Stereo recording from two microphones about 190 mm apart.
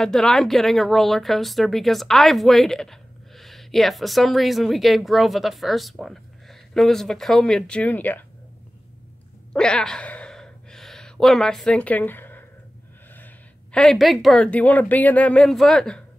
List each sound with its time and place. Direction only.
0.0 s speech: 5° left (ahead or behind)
9.5 s gasp: 5° left (ahead or behind)
13.1 s speech: 5° left (ahead or behind)